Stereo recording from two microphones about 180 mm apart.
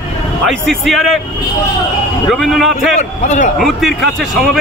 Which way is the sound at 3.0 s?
40° left (ahead or behind).